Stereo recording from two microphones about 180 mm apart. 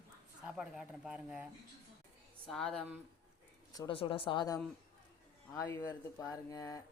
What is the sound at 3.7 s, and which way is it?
Speech, 25° left (ahead or behind).